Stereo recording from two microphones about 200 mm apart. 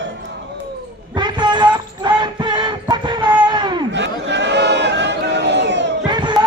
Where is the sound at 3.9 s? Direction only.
60° right (ahead or behind).